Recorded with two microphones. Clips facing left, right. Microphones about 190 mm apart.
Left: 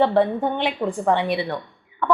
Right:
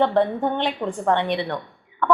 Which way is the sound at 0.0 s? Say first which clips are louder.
Left 1 dB; centre (ahead or behind).